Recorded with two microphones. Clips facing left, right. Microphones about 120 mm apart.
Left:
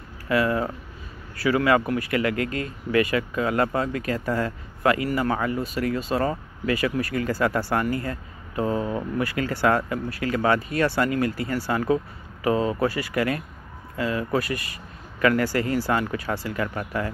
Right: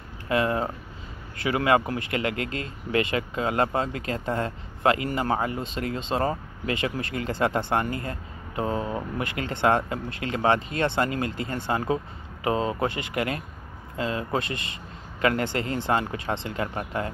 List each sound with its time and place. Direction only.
0.3 s speech: 25° right (ahead or behind)